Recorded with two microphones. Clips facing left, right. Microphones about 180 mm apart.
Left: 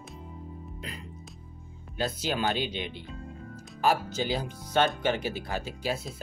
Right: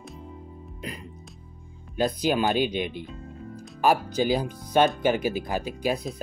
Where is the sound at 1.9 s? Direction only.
15° right (ahead or behind).